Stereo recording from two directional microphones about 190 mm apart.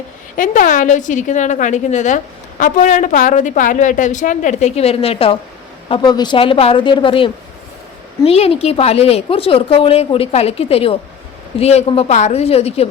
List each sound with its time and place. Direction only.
0.3 s a woman's voice: 45° left (ahead or behind)